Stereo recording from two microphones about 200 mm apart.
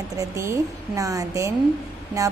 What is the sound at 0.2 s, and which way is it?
A woman's voice, 15° right (ahead or behind).